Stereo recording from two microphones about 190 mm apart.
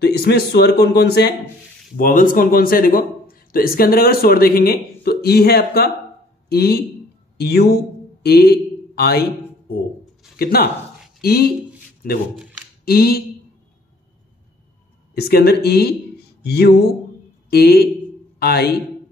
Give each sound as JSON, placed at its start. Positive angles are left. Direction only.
{"t": 0.0, "sound": "speech", "side_deg": 60}
{"t": 2.0, "sound": "speech", "side_deg": 45}
{"t": 10.3, "sound": "speech", "side_deg": 55}
{"t": 15.1, "sound": "speech", "side_deg": 55}